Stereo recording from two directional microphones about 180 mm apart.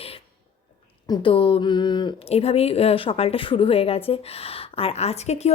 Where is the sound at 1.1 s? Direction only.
30° left (ahead or behind).